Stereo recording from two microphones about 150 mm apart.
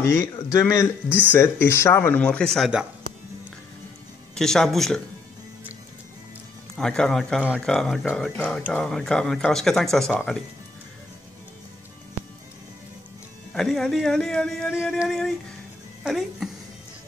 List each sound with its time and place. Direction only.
0.0 s speech: 15° left (ahead or behind)
1.0 s speech: 10° right (ahead or behind)
1.3 s speech: 15° left (ahead or behind); by 2.9 s centre (ahead or behind)
4.4 s speech: 5° left (ahead or behind)
6.7 s speech: 5° left (ahead or behind)
13.5 s speech: 5° left (ahead or behind)